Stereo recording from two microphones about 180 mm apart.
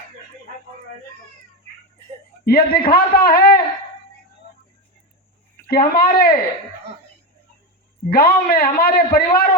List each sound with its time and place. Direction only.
2.4 s a man's voice: 55° left (ahead or behind)
5.7 s a man's voice: 55° left (ahead or behind)
8.1 s a man's voice: 55° left (ahead or behind)